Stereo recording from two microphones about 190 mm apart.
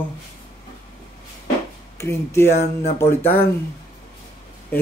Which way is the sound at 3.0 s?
10° left (ahead or behind).